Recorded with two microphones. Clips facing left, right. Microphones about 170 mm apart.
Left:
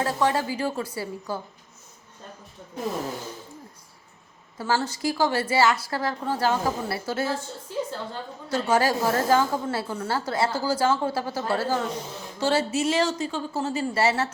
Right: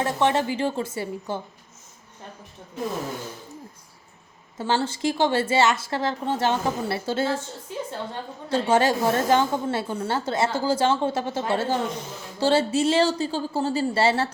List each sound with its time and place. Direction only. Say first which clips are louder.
0.0 s a woman's voice: right 2 dB; 25° right (ahead or behind)
4.5 s a woman's voice: right 1 dB; 25° right (ahead or behind)